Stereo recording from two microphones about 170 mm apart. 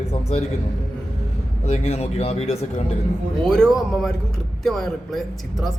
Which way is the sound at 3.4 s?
5° left (ahead or behind).